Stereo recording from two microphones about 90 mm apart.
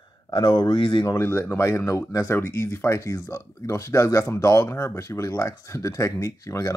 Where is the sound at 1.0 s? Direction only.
30° left (ahead or behind).